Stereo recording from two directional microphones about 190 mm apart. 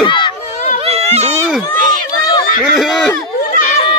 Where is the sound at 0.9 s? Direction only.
35° right (ahead or behind).